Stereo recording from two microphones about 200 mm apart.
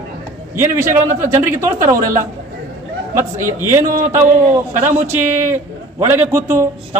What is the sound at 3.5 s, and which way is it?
A man's voice, 15° right (ahead or behind).